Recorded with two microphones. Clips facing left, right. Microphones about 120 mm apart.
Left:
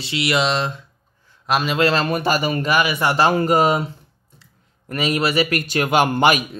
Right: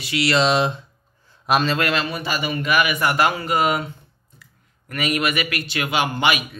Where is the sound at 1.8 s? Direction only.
30° left (ahead or behind).